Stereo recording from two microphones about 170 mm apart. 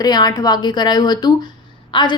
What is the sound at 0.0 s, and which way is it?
A woman's voice, 25° left (ahead or behind).